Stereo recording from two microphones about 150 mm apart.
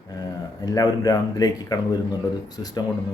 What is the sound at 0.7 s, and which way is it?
Speech, 25° left (ahead or behind).